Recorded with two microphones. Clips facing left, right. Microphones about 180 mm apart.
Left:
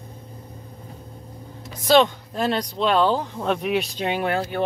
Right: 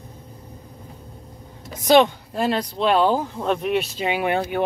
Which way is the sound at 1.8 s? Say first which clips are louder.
Right 2 dB; 10° right (ahead or behind).